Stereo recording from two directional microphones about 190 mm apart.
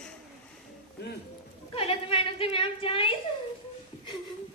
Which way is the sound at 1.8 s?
30° left (ahead or behind).